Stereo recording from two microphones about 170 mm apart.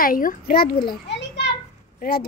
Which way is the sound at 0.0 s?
55° left (ahead or behind).